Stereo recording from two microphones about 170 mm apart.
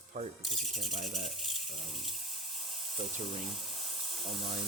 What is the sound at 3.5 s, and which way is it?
Steam, centre (ahead or behind).